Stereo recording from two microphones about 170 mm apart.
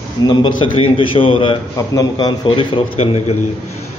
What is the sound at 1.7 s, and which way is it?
A man's voice, 20° left (ahead or behind).